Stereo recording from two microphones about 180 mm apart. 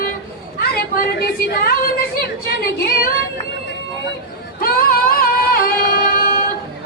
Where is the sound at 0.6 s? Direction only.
60° left (ahead or behind).